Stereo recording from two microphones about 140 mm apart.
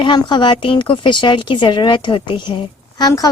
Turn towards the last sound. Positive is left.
turn(degrees=25)  # may be behind; listen again after turning